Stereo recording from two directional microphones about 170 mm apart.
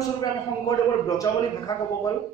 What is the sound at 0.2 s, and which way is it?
A man's voice, 20° left (ahead or behind).